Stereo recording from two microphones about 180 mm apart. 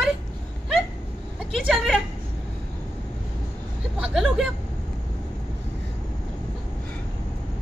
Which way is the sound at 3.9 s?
5° right (ahead or behind).